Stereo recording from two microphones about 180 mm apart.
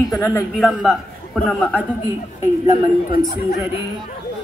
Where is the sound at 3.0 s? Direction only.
55° left (ahead or behind).